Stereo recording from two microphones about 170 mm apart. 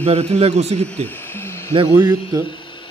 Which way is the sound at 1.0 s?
10° left (ahead or behind).